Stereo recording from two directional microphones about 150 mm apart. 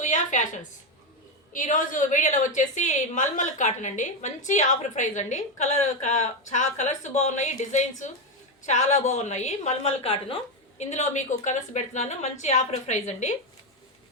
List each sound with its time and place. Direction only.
0.0 s a woman's voice: 55° left (ahead or behind)